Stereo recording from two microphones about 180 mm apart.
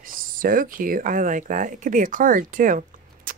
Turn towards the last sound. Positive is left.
turn(degrees=-45)  # may be behind; listen again after turning